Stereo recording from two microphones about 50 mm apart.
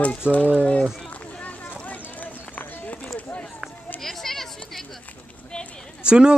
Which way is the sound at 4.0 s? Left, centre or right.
Centre.